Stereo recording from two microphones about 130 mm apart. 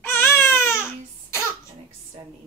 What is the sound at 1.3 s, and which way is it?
Cough, 20° left (ahead or behind).